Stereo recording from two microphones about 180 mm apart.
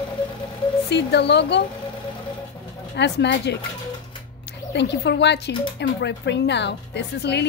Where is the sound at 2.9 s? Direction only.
70° left (ahead or behind).